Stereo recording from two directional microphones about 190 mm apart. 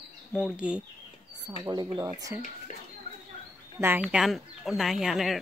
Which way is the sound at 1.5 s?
20° right (ahead or behind).